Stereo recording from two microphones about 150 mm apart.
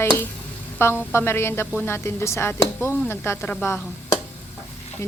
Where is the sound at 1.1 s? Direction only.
15° left (ahead or behind).